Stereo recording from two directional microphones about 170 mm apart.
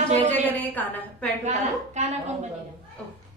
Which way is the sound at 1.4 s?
45° right (ahead or behind).